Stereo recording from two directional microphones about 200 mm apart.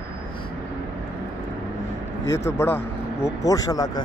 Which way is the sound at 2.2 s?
15° left (ahead or behind).